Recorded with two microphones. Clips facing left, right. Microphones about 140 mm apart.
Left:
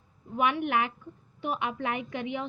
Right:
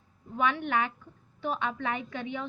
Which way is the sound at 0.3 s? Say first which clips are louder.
Left 1 dB; 15° left (ahead or behind).